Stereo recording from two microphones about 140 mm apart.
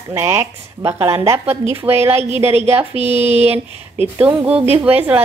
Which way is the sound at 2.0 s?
50° right (ahead or behind).